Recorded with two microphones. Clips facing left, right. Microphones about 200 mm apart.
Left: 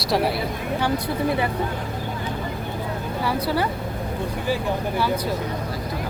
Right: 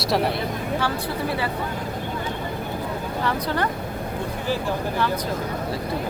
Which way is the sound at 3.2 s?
10° left (ahead or behind).